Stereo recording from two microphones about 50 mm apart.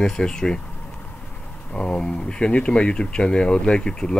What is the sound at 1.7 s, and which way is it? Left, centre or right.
Speech, centre.